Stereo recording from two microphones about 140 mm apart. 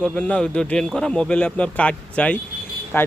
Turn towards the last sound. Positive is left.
turn(degrees=15)  # may be behind; listen again after turning